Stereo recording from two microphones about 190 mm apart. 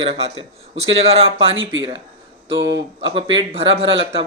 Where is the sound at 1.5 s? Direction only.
90° right.